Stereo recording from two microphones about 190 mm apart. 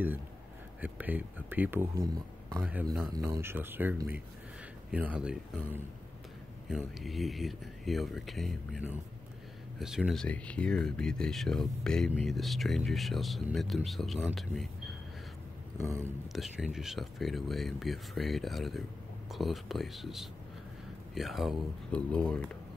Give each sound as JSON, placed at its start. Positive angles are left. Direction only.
{"t": 0.7, "sound": "speech", "side_deg": -10}
{"t": 16.3, "sound": "speech", "side_deg": 0}